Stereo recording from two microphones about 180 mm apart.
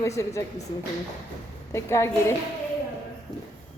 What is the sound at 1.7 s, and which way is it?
Speech, 15° left (ahead or behind).